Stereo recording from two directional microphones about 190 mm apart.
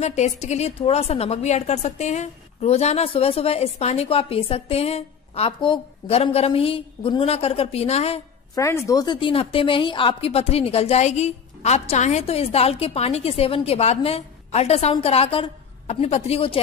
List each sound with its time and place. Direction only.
0.0 s a woman's voice: 35° left (ahead or behind)
8.5 s a woman's voice: 15° left (ahead or behind)